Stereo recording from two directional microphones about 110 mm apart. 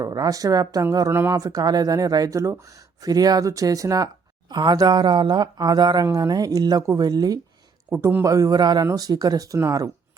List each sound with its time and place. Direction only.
0.0 s speech: 35° right (ahead or behind)